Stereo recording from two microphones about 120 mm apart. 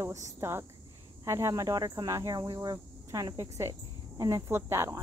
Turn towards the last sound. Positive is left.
turn(degrees=-25)  # may be behind; listen again after turning